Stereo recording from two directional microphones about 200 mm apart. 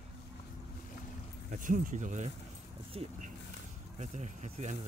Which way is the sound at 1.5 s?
40° right (ahead or behind).